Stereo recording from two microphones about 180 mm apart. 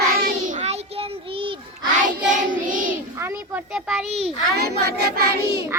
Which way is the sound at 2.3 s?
50° right (ahead or behind).